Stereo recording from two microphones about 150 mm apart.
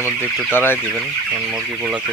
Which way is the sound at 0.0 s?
15° left (ahead or behind).